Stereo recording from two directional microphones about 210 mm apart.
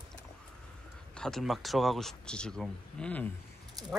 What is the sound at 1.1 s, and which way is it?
Speech, centre (ahead or behind).